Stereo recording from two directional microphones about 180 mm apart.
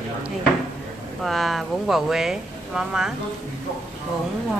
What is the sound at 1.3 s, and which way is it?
Speech, centre (ahead or behind).